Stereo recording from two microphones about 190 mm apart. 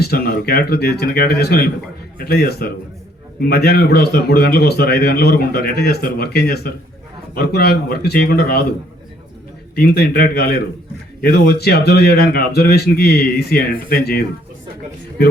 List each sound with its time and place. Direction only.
0.0 s a man's voice: 55° left (ahead or behind)
9.7 s a man's voice: 55° left (ahead or behind)